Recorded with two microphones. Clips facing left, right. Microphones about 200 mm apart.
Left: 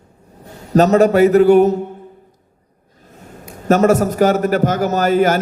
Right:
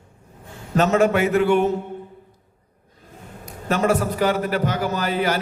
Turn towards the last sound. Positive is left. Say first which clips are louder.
# left 8 dB
turn(degrees=45)  # may be behind; listen again after turning